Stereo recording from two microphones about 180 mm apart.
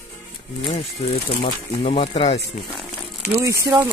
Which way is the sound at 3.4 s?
20° right (ahead or behind).